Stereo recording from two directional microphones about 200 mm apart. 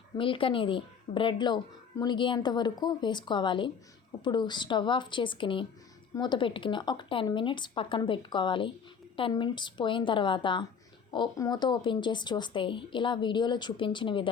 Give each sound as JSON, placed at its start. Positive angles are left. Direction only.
{"t": 0.2, "sound": "a woman's voice", "side_deg": 25}